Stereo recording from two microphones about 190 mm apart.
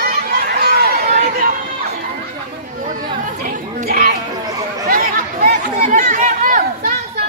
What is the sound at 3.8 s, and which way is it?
Music, 50° right (ahead or behind).